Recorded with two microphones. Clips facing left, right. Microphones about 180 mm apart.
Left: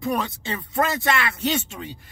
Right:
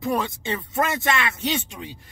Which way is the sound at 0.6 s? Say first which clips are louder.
Left 2 dB; 20° right (ahead or behind).